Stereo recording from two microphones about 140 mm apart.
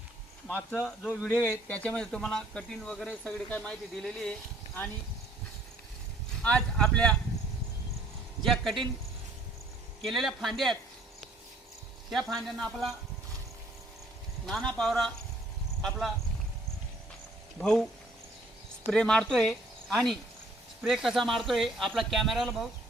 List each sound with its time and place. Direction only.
0.9 s speech: 5° left (ahead or behind)
6.4 s speech: 5° left (ahead or behind)
8.4 s speech: centre (ahead or behind)
10.1 s speech: centre (ahead or behind)
12.1 s speech: centre (ahead or behind)
14.4 s speech: centre (ahead or behind)
17.6 s speech: centre (ahead or behind)
18.9 s speech: 5° left (ahead or behind)